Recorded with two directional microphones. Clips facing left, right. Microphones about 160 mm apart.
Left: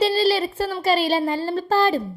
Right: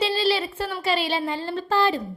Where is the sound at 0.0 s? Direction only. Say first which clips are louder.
Left 4 dB; 40° left (ahead or behind).